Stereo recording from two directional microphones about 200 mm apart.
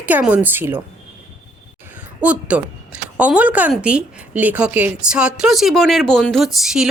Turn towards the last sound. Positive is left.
turn(degrees=-5)  # may be behind; listen again after turning